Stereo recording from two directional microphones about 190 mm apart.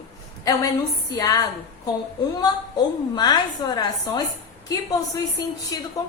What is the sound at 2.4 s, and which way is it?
Speech, 20° left (ahead or behind).